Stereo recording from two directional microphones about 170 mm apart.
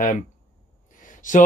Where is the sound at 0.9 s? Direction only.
50° left (ahead or behind).